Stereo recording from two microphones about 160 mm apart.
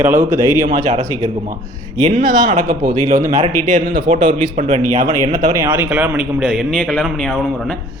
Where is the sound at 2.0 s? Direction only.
50° right (ahead or behind).